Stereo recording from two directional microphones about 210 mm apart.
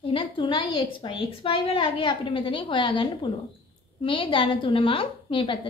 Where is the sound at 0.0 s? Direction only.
25° left (ahead or behind).